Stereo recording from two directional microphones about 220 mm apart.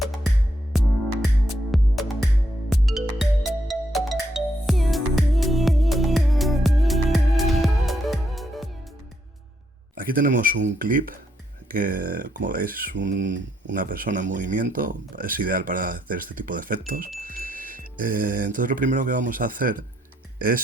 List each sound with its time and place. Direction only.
0.0 s music: centre (ahead or behind)
9.9 s speech: 40° right (ahead or behind)